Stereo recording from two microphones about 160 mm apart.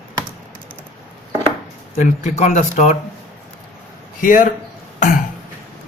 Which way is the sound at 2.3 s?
50° left (ahead or behind).